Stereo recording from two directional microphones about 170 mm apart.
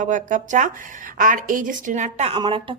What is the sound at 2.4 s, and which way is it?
Speech, 30° right (ahead or behind).